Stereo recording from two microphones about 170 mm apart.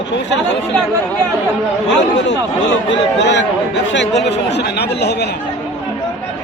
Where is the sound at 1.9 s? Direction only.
90° left; by 5.3 s 75° left (ahead or behind).